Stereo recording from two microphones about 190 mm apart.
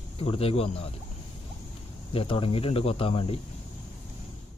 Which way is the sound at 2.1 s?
30° left (ahead or behind).